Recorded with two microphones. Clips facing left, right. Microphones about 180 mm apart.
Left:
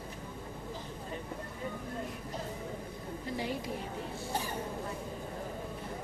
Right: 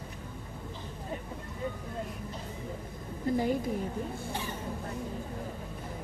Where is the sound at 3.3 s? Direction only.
50° right (ahead or behind).